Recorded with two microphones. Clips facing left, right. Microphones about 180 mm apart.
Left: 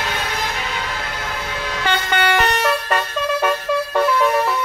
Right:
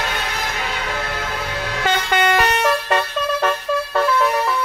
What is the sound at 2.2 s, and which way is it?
Vehicle, 35° right (ahead or behind).